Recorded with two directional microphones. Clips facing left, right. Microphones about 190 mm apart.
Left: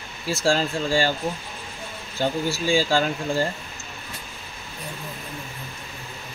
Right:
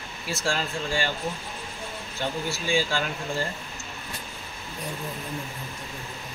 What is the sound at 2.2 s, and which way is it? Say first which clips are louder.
Speech: left 6 dB; 35° left (ahead or behind).